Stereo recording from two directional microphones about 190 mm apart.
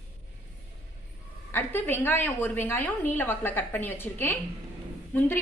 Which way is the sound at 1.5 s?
10° left (ahead or behind).